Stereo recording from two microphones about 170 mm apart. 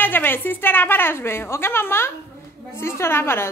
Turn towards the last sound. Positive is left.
turn(degrees=15)  # may be behind; listen again after turning